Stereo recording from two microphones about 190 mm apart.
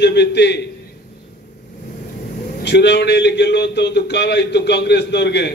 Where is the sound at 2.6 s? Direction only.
65° left (ahead or behind).